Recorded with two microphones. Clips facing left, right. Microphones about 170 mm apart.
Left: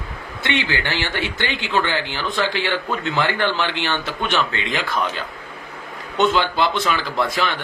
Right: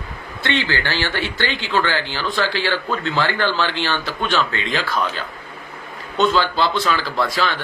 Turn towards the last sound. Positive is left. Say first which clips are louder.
# right 1 dB
turn(degrees=20)  # may be behind; listen again after turning